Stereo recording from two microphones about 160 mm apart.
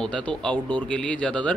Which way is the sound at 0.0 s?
5° left (ahead or behind).